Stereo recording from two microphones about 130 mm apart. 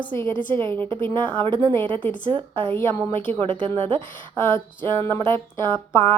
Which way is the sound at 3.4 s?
45° right (ahead or behind).